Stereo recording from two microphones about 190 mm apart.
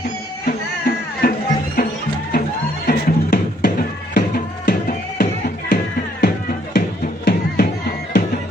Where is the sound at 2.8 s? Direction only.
50° left (ahead or behind).